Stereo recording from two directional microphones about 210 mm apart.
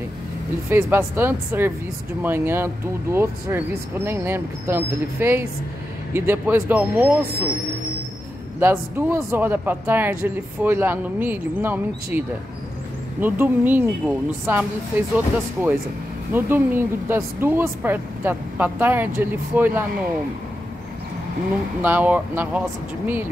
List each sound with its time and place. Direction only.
0.7 s speech: 10° right (ahead or behind)
8.5 s speech: 10° right (ahead or behind)
21.8 s speech: 10° right (ahead or behind)